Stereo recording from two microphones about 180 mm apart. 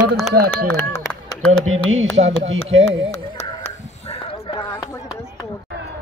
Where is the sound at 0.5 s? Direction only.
15° left (ahead or behind).